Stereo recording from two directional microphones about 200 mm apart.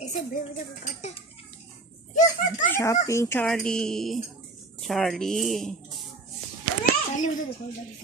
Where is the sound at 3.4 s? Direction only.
5° left (ahead or behind).